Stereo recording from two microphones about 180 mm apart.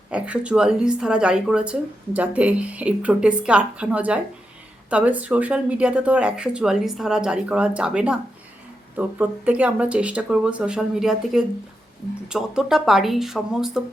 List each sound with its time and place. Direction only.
0.1 s a woman's voice: 5° right (ahead or behind)